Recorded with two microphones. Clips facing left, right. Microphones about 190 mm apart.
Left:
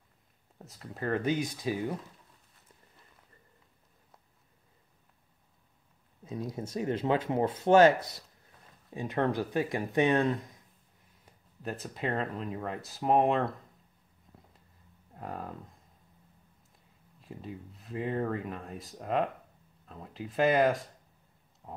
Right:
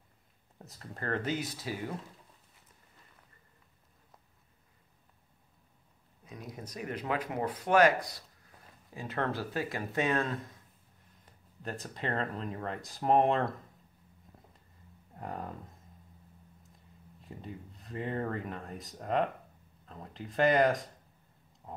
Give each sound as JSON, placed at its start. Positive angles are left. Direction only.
{"t": 0.6, "sound": "speech", "side_deg": 5}
{"t": 6.2, "sound": "speech", "side_deg": 25}
{"t": 11.8, "sound": "speech", "side_deg": 5}
{"t": 15.1, "sound": "speech", "side_deg": 0}
{"t": 17.2, "sound": "speech", "side_deg": 0}
{"t": 21.6, "sound": "a sound", "side_deg": 5}